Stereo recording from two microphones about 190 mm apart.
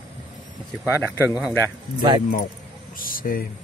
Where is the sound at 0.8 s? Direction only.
10° right (ahead or behind).